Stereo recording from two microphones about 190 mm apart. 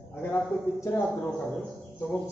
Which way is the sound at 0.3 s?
15° left (ahead or behind).